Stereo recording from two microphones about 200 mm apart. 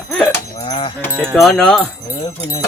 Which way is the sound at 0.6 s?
25° left (ahead or behind).